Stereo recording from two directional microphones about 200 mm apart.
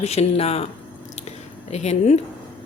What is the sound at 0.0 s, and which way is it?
Speech, 30° left (ahead or behind).